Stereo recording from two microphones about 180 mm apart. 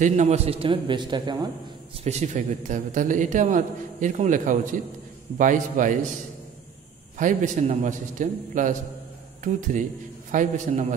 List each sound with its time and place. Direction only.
0.0 s a man's voice: 40° right (ahead or behind); by 1.5 s 25° right (ahead or behind)
2.0 s a man's voice: 40° right (ahead or behind)
7.2 s a man's voice: 45° right (ahead or behind)